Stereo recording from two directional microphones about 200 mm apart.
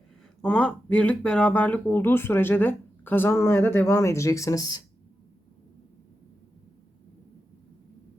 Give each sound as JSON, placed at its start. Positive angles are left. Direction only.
{"t": 0.4, "sound": "speech", "side_deg": 5}